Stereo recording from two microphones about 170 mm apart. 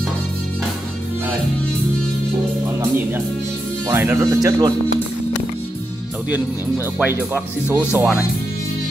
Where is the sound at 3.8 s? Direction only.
15° right (ahead or behind).